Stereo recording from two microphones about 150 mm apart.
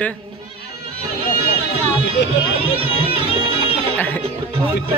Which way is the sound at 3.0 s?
40° right (ahead or behind).